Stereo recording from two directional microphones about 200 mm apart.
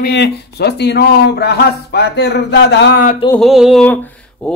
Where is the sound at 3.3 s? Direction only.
Centre (ahead or behind).